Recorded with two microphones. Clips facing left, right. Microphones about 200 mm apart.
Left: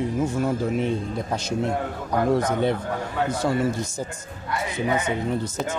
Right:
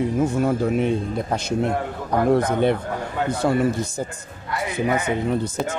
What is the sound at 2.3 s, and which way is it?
Speech, 60° right (ahead or behind).